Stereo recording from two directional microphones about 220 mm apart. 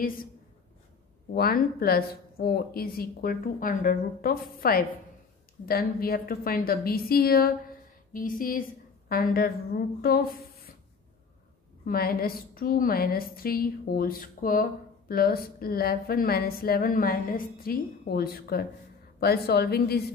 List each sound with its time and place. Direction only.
1.3 s a woman's voice: 45° left (ahead or behind)
11.8 s a woman's voice: 40° left (ahead or behind)